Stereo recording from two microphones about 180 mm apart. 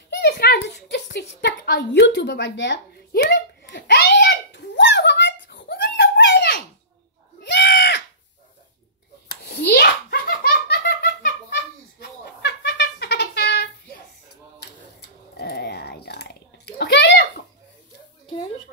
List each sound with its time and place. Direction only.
0.1 s a sound: 70° left (ahead or behind)
9.3 s giggle: 65° left (ahead or behind)
14.6 s typing: 65° left (ahead or behind)